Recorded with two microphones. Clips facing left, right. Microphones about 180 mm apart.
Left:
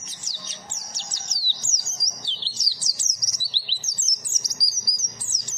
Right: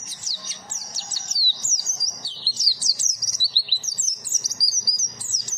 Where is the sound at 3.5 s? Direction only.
10° right (ahead or behind).